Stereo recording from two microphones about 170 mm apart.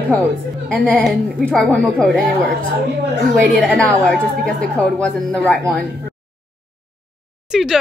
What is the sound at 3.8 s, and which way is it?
A woman's voice, 5° left (ahead or behind).